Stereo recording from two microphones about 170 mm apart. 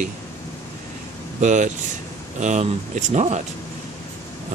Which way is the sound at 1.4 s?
45° right (ahead or behind).